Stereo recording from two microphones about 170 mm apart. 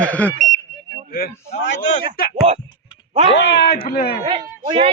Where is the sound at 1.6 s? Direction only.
90° left.